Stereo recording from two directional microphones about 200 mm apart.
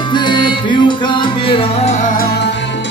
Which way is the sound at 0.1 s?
25° left (ahead or behind).